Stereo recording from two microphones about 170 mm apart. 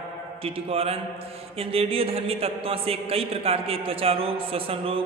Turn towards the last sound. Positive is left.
turn(degrees=-35)  # may be behind; listen again after turning